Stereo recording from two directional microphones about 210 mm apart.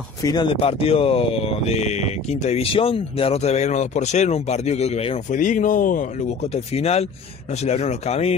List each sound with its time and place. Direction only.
0.2 s speech: 20° left (ahead or behind)